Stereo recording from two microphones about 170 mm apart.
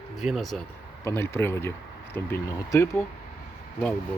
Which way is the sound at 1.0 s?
15° left (ahead or behind).